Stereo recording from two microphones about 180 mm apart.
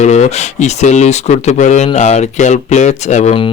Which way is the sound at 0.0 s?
40° left (ahead or behind).